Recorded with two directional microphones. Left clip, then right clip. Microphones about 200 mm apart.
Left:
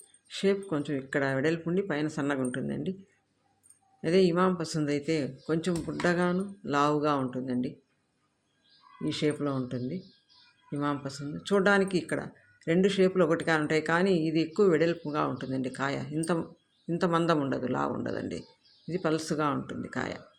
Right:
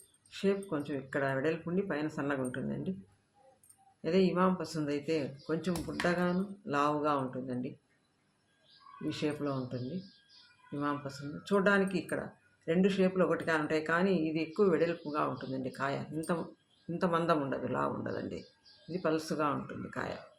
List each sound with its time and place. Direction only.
0.3 s speech: 40° left (ahead or behind)
4.0 s speech: 40° left (ahead or behind)
9.0 s speech: 40° left (ahead or behind)
10.8 s speech: 40° left (ahead or behind)